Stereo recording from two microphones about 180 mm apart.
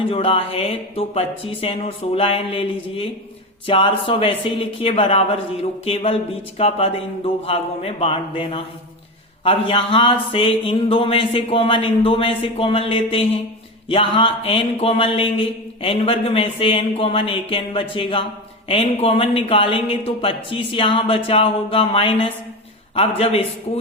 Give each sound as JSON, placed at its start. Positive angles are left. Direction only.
{"t": 0.0, "sound": "speech", "side_deg": 30}